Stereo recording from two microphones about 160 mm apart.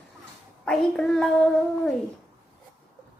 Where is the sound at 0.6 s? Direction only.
5° left (ahead or behind).